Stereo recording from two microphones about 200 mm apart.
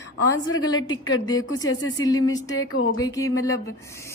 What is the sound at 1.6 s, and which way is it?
Speech, 70° left (ahead or behind).